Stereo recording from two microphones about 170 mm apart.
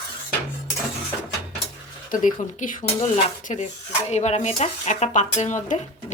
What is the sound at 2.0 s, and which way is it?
Speech, 50° left (ahead or behind).